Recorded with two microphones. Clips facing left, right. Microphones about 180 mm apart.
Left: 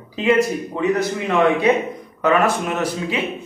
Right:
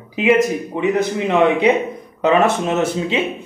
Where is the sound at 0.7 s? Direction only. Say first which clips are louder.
Right 2 dB; 20° right (ahead or behind).